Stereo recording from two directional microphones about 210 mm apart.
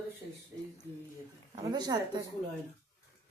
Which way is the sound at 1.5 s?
20° right (ahead or behind).